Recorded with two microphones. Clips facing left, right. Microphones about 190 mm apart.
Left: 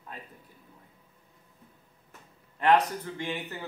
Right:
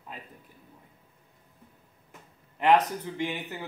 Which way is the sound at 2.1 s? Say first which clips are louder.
Right 2 dB; 20° right (ahead or behind).